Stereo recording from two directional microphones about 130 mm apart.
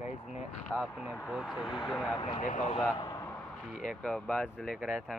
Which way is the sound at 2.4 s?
80° left.